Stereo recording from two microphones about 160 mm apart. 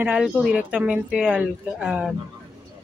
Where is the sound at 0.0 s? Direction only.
5° right (ahead or behind).